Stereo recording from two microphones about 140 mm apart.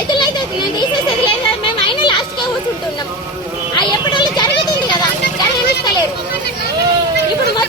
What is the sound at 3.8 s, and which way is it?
Speech, 30° left (ahead or behind).